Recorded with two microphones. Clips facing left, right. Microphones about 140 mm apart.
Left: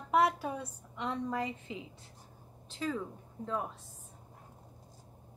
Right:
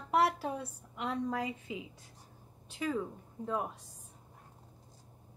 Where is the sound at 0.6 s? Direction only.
10° right (ahead or behind).